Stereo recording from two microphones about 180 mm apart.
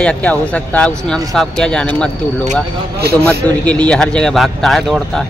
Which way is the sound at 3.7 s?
5° left (ahead or behind).